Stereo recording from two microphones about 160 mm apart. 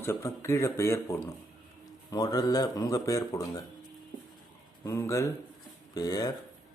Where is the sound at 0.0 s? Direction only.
15° left (ahead or behind).